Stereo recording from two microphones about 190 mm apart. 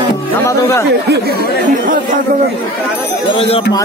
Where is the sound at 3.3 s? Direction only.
30° left (ahead or behind).